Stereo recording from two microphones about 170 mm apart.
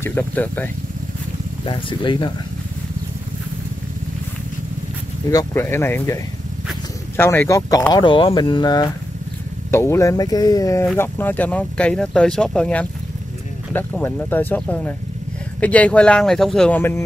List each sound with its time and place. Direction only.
0.0 s speech: 10° left (ahead or behind)
1.7 s speech: 30° left (ahead or behind)
5.3 s speech: 15° left (ahead or behind)
7.2 s speech: 15° left (ahead or behind)